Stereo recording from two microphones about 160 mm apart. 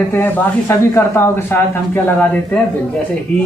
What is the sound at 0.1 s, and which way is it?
A man's voice, 15° left (ahead or behind).